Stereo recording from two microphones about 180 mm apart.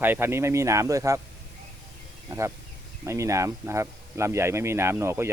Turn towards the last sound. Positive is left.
turn(degrees=-15)  # may be behind; listen again after turning